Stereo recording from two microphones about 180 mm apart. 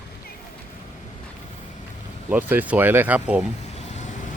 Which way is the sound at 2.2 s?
10° right (ahead or behind).